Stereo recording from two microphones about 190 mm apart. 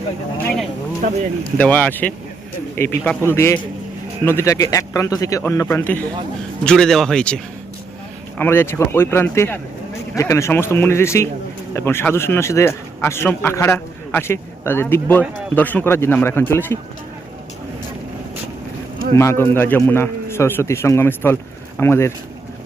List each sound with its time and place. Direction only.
1.5 s a man's voice: 5° left (ahead or behind)
19.1 s a man's voice: 15° left (ahead or behind)